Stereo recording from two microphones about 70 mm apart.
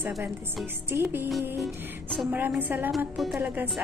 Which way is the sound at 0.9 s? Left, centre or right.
Right.